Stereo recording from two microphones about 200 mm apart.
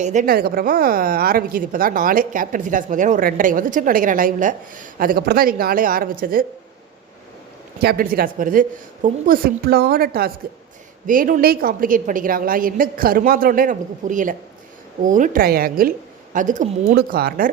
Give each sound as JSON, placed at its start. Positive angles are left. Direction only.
{"t": 0.0, "sound": "a woman's voice", "side_deg": -40}
{"t": 7.8, "sound": "a woman's voice", "side_deg": -50}